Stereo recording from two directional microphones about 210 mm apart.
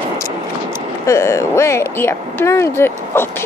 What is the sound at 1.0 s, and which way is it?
A woman's voice, 15° left (ahead or behind).